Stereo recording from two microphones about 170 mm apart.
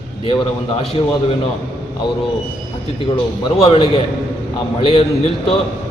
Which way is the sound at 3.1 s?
30° left (ahead or behind).